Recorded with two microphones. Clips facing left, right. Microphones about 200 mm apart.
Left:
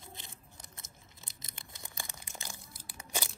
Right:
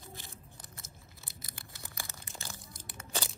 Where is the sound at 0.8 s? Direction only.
20° left (ahead or behind).